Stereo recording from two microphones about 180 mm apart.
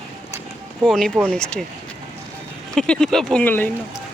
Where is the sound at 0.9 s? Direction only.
5° left (ahead or behind).